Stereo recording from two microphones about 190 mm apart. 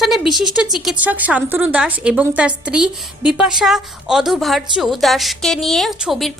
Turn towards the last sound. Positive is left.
turn(degrees=0)  # may be behind; listen again after turning